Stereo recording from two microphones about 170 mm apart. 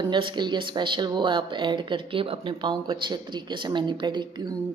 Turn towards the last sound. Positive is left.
turn(degrees=-25)  # may be behind; listen again after turning